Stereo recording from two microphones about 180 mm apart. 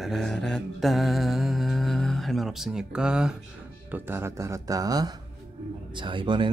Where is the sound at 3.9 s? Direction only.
10° right (ahead or behind).